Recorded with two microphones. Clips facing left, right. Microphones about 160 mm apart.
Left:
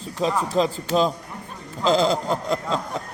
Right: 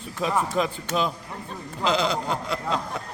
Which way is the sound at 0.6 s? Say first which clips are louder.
Left 5 dB; 35° left (ahead or behind).